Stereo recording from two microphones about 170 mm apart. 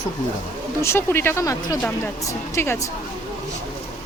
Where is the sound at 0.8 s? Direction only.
15° left (ahead or behind).